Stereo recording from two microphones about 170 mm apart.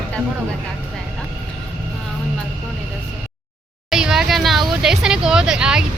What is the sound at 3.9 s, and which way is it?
Speech, 5° right (ahead or behind).